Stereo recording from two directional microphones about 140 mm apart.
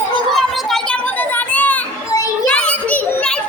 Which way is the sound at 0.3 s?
5° left (ahead or behind).